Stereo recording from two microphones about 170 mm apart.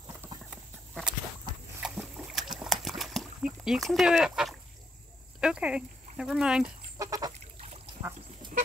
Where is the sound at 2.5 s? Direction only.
Centre (ahead or behind).